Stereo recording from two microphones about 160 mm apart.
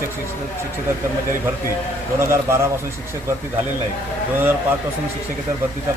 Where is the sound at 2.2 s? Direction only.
15° right (ahead or behind).